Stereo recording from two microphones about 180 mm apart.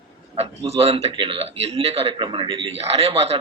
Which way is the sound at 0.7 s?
35° right (ahead or behind).